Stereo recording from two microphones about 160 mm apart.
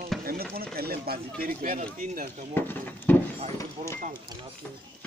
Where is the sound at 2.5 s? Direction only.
10° left (ahead or behind).